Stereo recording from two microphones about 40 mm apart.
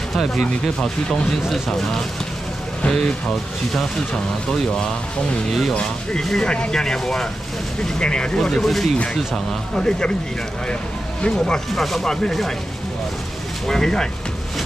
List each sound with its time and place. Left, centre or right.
0.1 s speech: centre
0.7 s speech: centre
2.9 s speech: centre
5.5 s speech: centre
6.4 s speech: left
8.4 s speech: centre
11.2 s speech: centre
11.7 s speech: centre
12.3 s speech: centre
13.7 s speech: centre